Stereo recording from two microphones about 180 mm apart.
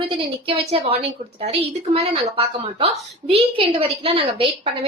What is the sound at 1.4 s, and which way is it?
A woman's voice, 35° right (ahead or behind).